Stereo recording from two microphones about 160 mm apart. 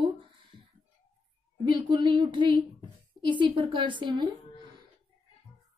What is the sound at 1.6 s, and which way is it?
A woman's voice, 30° right (ahead or behind).